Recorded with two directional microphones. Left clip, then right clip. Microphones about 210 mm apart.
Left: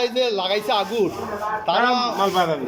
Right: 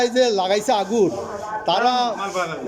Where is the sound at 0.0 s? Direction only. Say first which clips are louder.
Right 3 dB; 15° right (ahead or behind).